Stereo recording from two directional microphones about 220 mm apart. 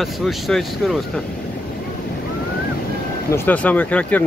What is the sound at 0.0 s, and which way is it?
Speech, centre (ahead or behind).